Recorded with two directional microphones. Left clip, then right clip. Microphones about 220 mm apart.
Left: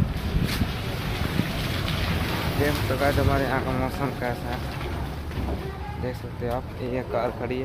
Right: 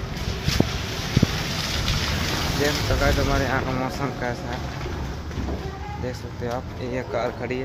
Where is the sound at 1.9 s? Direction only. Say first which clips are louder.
Right 3 dB; 50° right (ahead or behind).